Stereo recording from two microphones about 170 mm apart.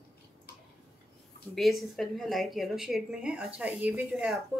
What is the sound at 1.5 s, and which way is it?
A woman's voice, centre (ahead or behind).